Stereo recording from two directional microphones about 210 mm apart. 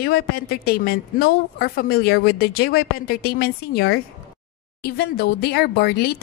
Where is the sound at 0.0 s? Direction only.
45° left (ahead or behind).